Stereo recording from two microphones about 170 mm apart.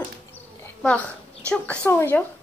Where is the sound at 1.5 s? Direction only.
10° left (ahead or behind).